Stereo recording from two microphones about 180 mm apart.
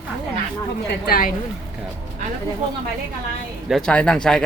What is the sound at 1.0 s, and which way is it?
Speech, 50° left (ahead or behind).